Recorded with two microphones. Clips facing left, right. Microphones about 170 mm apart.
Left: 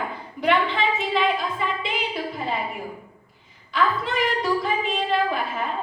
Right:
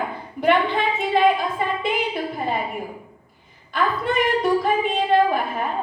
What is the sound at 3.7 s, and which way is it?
A woman's voice, 55° right (ahead or behind).